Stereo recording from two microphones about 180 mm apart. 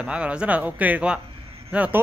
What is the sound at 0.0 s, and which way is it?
A man's voice, 5° right (ahead or behind).